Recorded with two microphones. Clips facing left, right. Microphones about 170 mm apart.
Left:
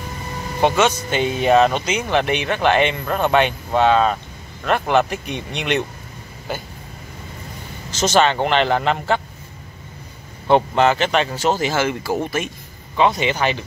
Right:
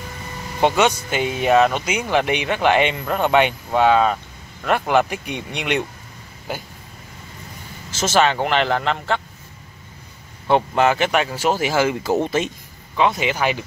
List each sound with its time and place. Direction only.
0.6 s speech: 15° right (ahead or behind)
7.9 s speech: 5° right (ahead or behind)
8.7 s a man's voice: 5° left (ahead or behind)
10.5 s speech: 5° right (ahead or behind); by 12.4 s 20° right (ahead or behind)
12.9 s speech: 5° right (ahead or behind)